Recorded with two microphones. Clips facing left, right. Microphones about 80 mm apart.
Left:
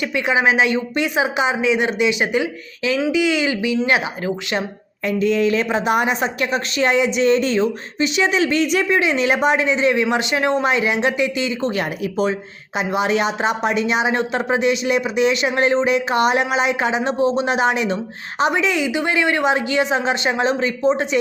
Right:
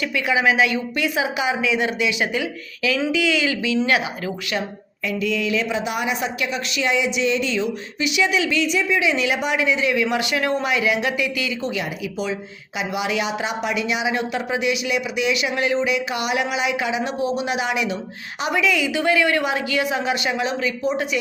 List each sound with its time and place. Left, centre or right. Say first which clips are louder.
0.3 s speech: left 2 dB; left
5.0 s speech: left 6 dB; left
11.7 s speech: left 4 dB; left